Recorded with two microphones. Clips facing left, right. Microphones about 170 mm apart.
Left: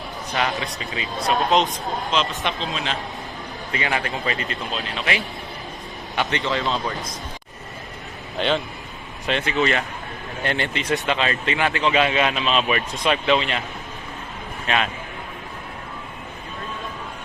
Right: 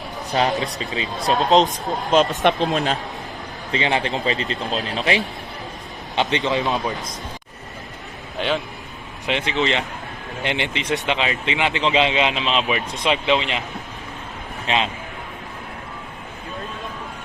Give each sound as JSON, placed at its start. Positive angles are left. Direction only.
{"t": 0.3, "sound": "speech", "side_deg": -30}
{"t": 1.5, "sound": "speech", "side_deg": 0}
{"t": 2.0, "sound": "speech", "side_deg": -50}
{"t": 3.7, "sound": "speech", "side_deg": -25}
{"t": 6.1, "sound": "speech", "side_deg": -20}
{"t": 8.4, "sound": "speech", "side_deg": -10}
{"t": 14.7, "sound": "speech", "side_deg": -25}